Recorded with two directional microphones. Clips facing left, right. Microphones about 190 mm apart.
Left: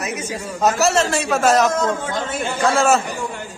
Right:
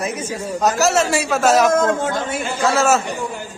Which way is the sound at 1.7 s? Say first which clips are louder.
Right 4 dB; 50° right (ahead or behind).